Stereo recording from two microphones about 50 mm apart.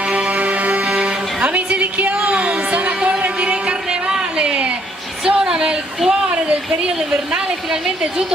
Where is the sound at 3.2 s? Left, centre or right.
Right.